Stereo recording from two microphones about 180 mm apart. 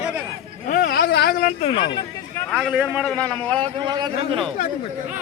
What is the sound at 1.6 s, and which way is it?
Speech, 30° left (ahead or behind).